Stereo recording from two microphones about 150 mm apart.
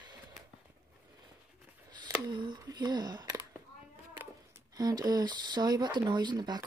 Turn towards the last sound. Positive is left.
turn(degrees=-30)  # may be behind; listen again after turning